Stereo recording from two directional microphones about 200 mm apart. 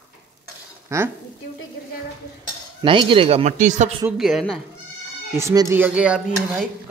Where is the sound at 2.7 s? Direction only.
25° right (ahead or behind).